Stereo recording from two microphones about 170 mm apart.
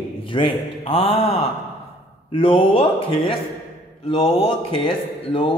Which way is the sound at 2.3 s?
35° left (ahead or behind).